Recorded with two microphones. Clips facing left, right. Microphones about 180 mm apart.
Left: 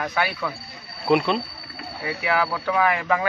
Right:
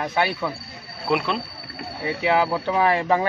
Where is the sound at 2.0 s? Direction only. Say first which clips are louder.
Right 3 dB; 25° right (ahead or behind).